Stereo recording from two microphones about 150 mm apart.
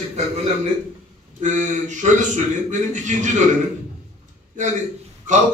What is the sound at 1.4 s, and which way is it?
A man's voice, 55° right (ahead or behind).